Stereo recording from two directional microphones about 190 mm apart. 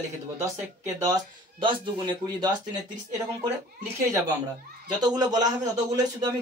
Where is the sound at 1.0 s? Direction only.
20° right (ahead or behind).